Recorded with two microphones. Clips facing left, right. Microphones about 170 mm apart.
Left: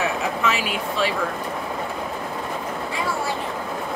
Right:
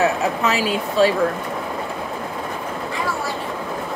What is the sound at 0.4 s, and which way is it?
Speech, 40° right (ahead or behind).